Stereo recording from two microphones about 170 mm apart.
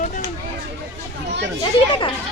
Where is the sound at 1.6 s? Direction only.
30° left (ahead or behind).